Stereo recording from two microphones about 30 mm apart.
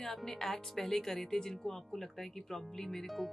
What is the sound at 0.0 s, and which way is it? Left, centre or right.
Speech, centre.